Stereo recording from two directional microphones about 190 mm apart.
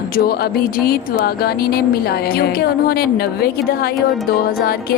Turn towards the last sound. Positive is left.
turn(degrees=55)  # may be behind; listen again after turning